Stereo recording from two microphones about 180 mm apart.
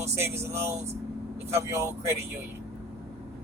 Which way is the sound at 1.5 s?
15° right (ahead or behind).